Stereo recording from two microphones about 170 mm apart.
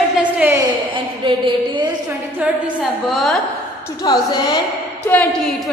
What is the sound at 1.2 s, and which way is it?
Speech, 30° right (ahead or behind).